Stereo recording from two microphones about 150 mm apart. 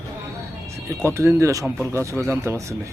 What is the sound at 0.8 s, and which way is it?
Speech, 20° right (ahead or behind).